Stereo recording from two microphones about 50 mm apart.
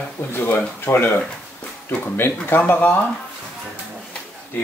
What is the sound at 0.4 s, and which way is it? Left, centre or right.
Speech, left.